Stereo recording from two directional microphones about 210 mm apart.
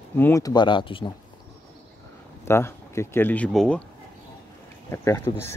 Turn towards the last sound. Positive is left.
turn(degrees=15)  # may be behind; listen again after turning